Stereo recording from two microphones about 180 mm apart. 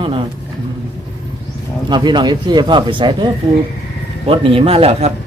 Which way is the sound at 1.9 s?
25° right (ahead or behind).